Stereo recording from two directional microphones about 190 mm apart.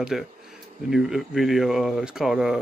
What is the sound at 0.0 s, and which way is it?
A man's voice, centre (ahead or behind).